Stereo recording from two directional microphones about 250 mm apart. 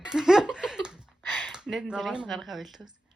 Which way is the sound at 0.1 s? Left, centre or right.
Centre.